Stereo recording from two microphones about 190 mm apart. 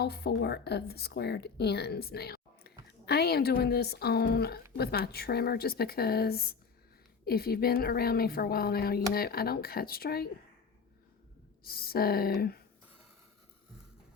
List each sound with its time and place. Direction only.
0.0 s speech: 55° left (ahead or behind)
11.6 s speech: 55° left (ahead or behind)